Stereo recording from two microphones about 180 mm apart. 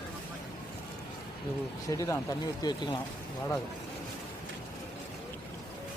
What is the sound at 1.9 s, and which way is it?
Speech, 20° left (ahead or behind).